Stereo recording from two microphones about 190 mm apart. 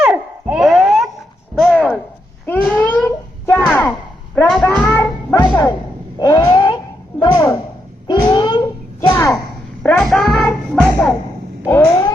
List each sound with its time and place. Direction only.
0.0 s babbling: 5° right (ahead or behind)
1.5 s a sound: centre (ahead or behind)
4.4 s music: 5° left (ahead or behind); by 5.7 s 20° left (ahead or behind)
6.1 s a sound: 20° left (ahead or behind)
9.8 s child singing: 5° left (ahead or behind)
11.6 s cat: 15° left (ahead or behind)